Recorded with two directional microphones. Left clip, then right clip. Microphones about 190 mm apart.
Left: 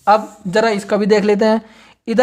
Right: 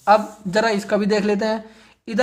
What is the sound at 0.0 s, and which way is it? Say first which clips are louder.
Speech: left 2 dB; 30° left (ahead or behind).